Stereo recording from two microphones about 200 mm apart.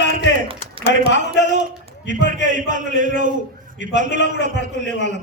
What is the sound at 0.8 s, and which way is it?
A man's voice, 30° right (ahead or behind).